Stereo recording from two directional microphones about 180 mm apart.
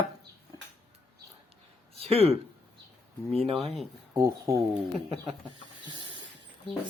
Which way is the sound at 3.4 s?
30° right (ahead or behind).